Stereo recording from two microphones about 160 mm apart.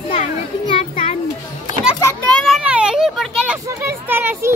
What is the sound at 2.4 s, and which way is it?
Children playing, centre (ahead or behind).